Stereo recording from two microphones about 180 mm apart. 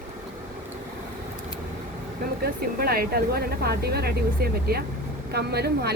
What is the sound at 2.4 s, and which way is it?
Speech, 55° right (ahead or behind).